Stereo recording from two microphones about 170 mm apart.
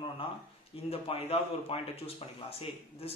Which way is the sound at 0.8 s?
35° left (ahead or behind).